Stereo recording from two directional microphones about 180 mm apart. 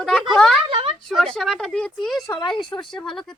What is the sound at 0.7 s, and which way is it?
Speech, 30° right (ahead or behind).